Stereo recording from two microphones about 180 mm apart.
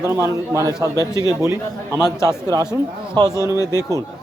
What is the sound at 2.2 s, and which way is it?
Speech, 20° right (ahead or behind).